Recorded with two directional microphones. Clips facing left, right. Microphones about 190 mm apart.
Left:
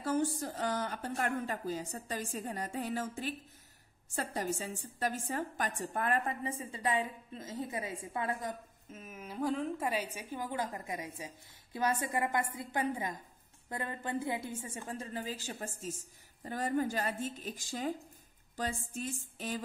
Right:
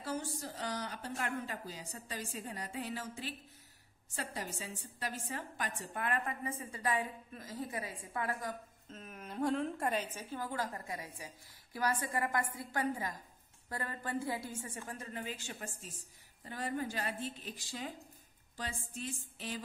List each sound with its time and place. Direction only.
0.0 s a woman's voice: 50° left (ahead or behind); by 8.5 s 25° left (ahead or behind)
8.8 s a woman's voice: 5° left (ahead or behind); by 19.6 s 45° left (ahead or behind)